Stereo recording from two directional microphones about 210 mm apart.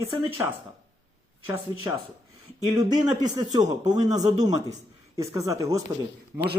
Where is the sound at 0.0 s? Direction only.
10° right (ahead or behind).